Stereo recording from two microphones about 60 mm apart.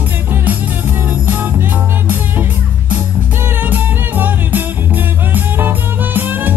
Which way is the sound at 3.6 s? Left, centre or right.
Right.